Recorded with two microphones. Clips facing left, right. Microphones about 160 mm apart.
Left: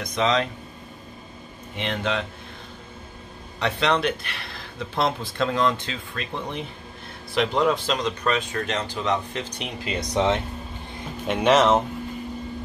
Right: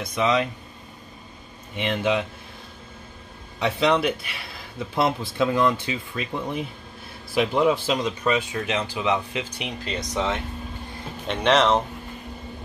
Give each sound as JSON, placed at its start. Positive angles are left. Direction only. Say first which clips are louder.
{"t": 0.0, "sound": "speech", "louder": "even", "side_deg": -10}
{"t": 1.8, "sound": "speech", "louder": "right 3 dB", "side_deg": -10}
{"t": 3.5, "sound": "speech", "louder": "right 2 dB", "side_deg": -5}
{"t": 10.1, "sound": "speech", "louder": "left 5 dB", "side_deg": 20}
{"t": 11.2, "sound": "speech", "louder": "left 2 dB", "side_deg": 5}